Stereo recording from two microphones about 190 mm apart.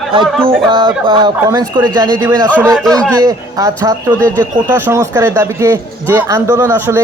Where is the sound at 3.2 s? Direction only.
20° right (ahead or behind).